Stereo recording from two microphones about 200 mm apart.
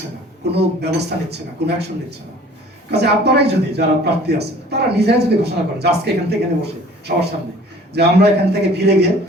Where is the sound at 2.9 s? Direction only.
55° right (ahead or behind).